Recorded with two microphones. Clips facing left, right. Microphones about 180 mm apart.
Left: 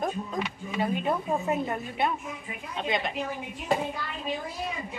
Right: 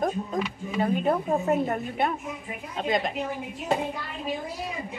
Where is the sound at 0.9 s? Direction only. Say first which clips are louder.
Right 5 dB; 45° right (ahead or behind).